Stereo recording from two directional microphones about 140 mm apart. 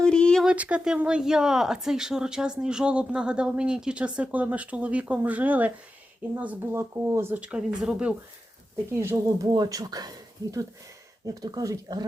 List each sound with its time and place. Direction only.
0.0 s a sound: 5° left (ahead or behind)
0.4 s speech: 10° right (ahead or behind)
8.9 s speech: 15° right (ahead or behind)
11.3 s speech: 25° right (ahead or behind)